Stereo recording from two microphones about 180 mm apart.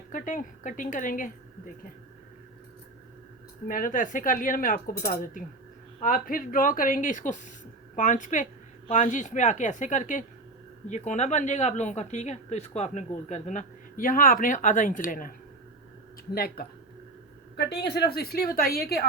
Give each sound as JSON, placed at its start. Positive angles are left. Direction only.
{"t": 0.1, "sound": "speech", "side_deg": 45}
{"t": 3.7, "sound": "a woman's voice", "side_deg": 50}
{"t": 16.3, "sound": "a woman's voice", "side_deg": 55}